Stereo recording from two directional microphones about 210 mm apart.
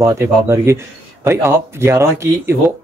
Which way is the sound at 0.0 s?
15° right (ahead or behind).